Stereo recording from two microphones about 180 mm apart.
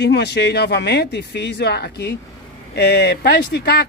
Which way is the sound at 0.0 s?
70° left (ahead or behind).